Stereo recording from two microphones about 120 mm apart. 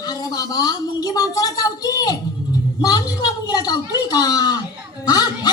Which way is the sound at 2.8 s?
30° left (ahead or behind).